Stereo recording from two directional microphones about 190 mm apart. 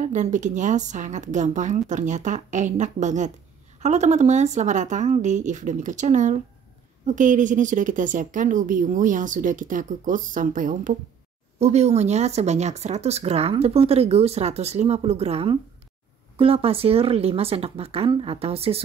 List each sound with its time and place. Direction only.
0.0 s a woman's voice: 40° right (ahead or behind)